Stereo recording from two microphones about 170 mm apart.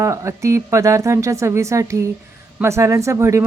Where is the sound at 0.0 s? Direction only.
15° right (ahead or behind).